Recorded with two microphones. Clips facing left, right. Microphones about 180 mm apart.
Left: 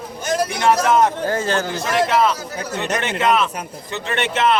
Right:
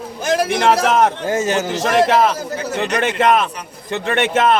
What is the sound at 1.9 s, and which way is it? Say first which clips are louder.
A man's voice: right 3 dB; 50° right (ahead or behind).